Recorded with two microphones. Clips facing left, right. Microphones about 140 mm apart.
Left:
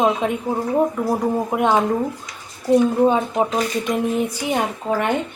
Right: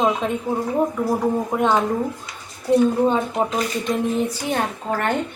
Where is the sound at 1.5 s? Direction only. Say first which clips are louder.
Left 2 dB; 10° left (ahead or behind).